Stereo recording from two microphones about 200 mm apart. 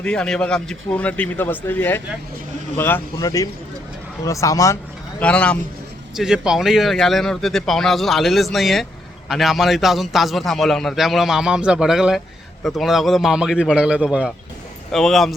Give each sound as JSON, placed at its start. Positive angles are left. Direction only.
{"t": 0.0, "sound": "a man's voice", "side_deg": 5}